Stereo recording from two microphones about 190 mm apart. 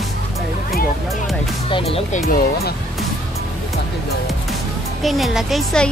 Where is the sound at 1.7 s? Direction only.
30° left (ahead or behind).